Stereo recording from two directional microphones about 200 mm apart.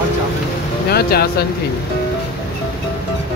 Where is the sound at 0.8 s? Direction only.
50° left (ahead or behind).